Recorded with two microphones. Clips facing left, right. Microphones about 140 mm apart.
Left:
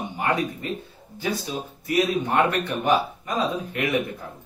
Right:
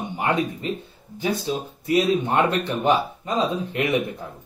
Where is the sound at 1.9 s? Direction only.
25° right (ahead or behind).